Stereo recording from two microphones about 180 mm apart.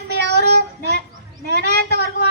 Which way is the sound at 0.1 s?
70° right (ahead or behind).